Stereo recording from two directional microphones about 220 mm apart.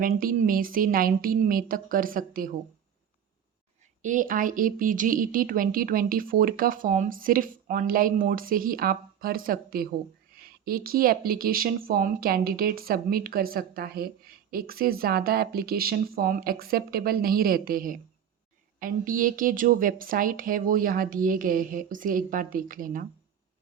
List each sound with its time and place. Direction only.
0.0 s a woman's voice: 40° right (ahead or behind)
4.0 s a woman's voice: 35° right (ahead or behind)